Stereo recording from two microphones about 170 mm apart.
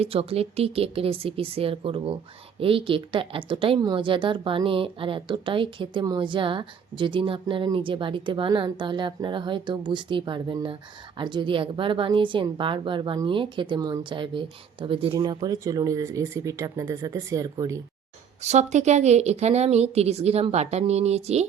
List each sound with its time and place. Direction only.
0.0 s a woman's voice: 35° right (ahead or behind); by 17.8 s 20° right (ahead or behind)
18.4 s speech: 40° right (ahead or behind)